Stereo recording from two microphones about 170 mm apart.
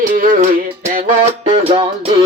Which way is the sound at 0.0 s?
50° right (ahead or behind).